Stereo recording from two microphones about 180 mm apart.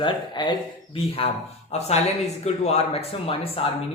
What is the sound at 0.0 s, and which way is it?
A man's voice, 25° left (ahead or behind).